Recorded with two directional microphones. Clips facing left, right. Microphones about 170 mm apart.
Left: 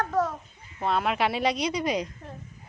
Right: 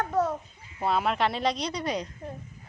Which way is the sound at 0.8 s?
5° right (ahead or behind).